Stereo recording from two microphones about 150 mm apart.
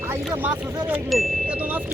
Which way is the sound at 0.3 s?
10° right (ahead or behind).